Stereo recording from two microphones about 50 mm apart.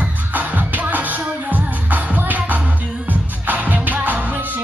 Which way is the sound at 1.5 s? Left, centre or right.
Right.